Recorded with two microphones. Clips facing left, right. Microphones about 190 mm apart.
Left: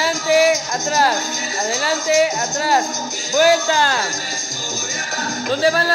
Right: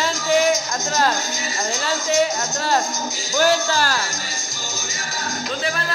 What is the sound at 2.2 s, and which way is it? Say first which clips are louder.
Speech: left 3 dB; 10° left (ahead or behind).